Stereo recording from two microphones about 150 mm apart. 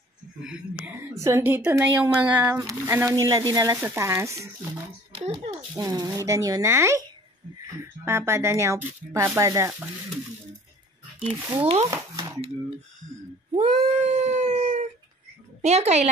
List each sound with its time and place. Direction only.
0.4 s speech: 5° right (ahead or behind)
1.1 s speech: 20° right (ahead or behind)
5.1 s a child's voice: 40° right (ahead or behind)
5.8 s speech: 20° right (ahead or behind)
11.5 s a child's voice: 40° right (ahead or behind)
11.9 s a sound: 20° right (ahead or behind)
13.6 s a sound: 45° right (ahead or behind)
15.6 s speech: 45° right (ahead or behind)